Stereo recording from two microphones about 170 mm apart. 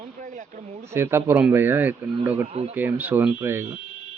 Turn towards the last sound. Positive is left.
turn(degrees=-15)  # may be behind; listen again after turning